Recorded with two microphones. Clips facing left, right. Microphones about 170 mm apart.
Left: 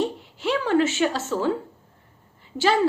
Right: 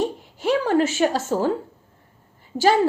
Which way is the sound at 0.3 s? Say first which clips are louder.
Right 2 dB; 45° right (ahead or behind).